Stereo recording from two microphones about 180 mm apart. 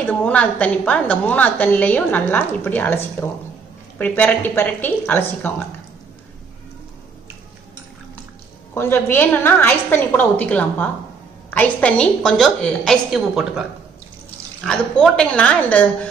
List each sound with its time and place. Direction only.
0.0 s a woman's voice: 10° left (ahead or behind)
8.7 s a woman's voice: 10° left (ahead or behind)